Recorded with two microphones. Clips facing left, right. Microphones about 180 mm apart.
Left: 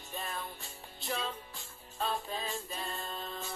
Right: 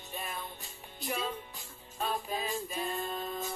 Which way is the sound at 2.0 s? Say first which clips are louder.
Right 1 dB; 10° right (ahead or behind).